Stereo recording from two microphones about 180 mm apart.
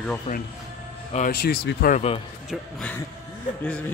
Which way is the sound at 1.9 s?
35° left (ahead or behind).